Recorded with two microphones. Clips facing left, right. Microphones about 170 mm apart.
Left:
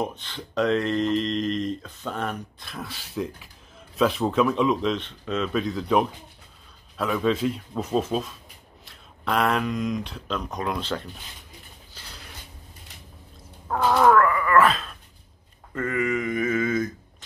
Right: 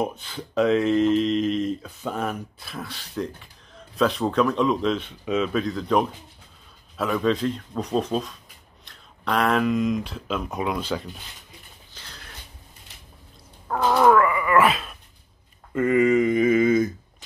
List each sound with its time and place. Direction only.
0.0 s speech: 5° right (ahead or behind)
13.7 s dog: 5° right (ahead or behind)
15.7 s mantra: 20° right (ahead or behind)